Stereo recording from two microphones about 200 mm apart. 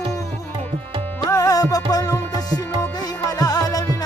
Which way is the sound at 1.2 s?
15° left (ahead or behind).